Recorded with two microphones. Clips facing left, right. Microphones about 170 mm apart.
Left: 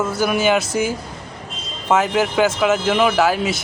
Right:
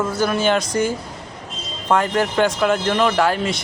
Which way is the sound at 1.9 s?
5° left (ahead or behind).